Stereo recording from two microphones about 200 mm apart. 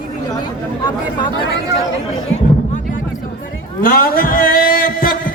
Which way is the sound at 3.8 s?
45° left (ahead or behind).